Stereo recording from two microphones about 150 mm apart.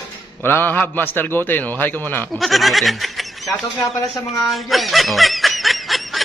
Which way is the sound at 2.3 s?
Centre (ahead or behind).